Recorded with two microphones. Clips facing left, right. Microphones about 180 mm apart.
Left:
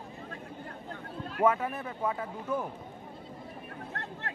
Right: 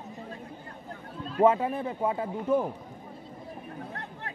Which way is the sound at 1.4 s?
30° right (ahead or behind).